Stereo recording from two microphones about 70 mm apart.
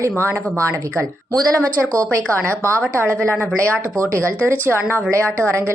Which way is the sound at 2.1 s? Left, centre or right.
Right.